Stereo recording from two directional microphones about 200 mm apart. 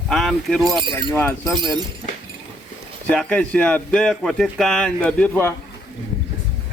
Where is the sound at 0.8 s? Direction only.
25° right (ahead or behind).